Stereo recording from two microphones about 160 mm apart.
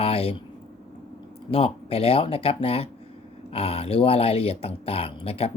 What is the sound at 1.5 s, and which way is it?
Speech, 35° left (ahead or behind).